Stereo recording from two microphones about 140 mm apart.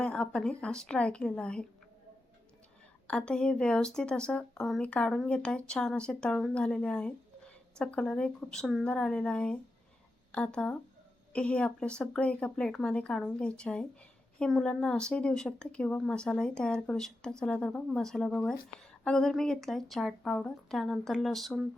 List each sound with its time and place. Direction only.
0.0 s speech: 5° left (ahead or behind)
3.1 s speech: 5° left (ahead or behind)